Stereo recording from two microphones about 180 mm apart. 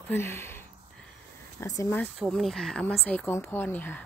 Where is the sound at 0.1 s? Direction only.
15° left (ahead or behind).